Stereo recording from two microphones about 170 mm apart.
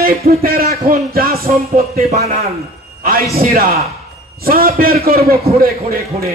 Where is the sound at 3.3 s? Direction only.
60° right (ahead or behind).